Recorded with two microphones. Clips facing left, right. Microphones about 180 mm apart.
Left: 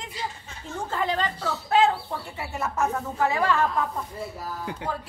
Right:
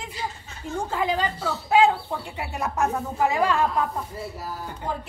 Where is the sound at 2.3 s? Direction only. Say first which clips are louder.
Right 1 dB; 15° right (ahead or behind).